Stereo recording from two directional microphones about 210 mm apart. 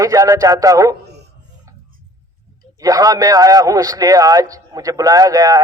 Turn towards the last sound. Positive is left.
turn(degrees=-15)  # may be behind; listen again after turning